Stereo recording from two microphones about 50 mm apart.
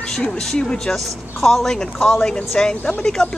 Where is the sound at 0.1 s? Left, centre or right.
Centre.